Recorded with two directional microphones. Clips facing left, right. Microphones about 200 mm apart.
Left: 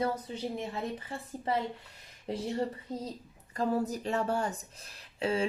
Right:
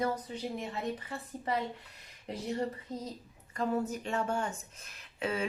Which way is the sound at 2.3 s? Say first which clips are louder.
Left 5 dB; 30° left (ahead or behind).